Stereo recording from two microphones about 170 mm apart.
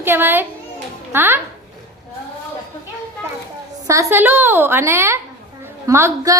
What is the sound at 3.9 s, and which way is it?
A woman's voice, 15° right (ahead or behind).